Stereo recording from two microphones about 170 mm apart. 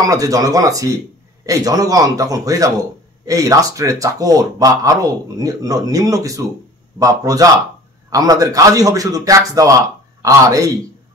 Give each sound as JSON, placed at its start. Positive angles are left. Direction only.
{"t": 0.1, "sound": "speech", "side_deg": -20}